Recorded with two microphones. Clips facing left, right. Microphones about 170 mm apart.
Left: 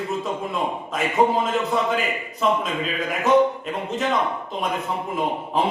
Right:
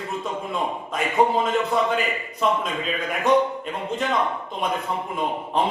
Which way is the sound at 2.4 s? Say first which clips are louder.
Left 1 dB; centre (ahead or behind).